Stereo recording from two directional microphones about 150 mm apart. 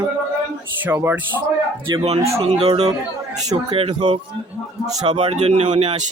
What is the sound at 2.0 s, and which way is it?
Speech, 45° right (ahead or behind).